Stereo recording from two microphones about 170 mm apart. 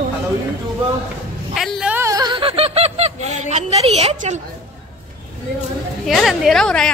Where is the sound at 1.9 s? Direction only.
20° right (ahead or behind); by 4.4 s 40° right (ahead or behind).